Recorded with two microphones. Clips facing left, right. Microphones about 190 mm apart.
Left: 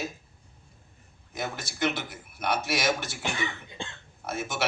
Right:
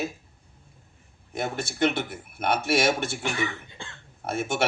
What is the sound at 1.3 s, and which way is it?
A man's voice, 55° right (ahead or behind).